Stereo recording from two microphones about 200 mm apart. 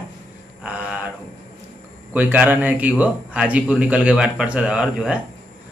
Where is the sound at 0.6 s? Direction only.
5° right (ahead or behind).